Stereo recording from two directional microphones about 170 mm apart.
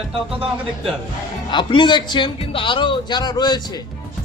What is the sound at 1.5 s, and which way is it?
A man's voice, 30° left (ahead or behind).